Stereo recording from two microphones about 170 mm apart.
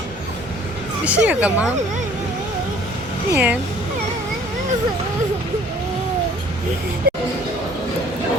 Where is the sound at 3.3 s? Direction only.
10° right (ahead or behind).